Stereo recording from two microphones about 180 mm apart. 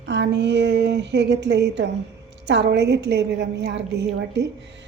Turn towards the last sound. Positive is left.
turn(degrees=-65)  # may be behind; listen again after turning